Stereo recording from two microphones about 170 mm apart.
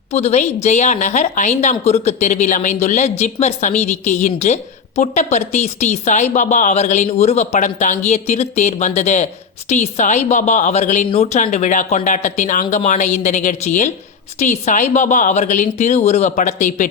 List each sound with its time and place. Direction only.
0.1 s a woman's voice: 40° left (ahead or behind)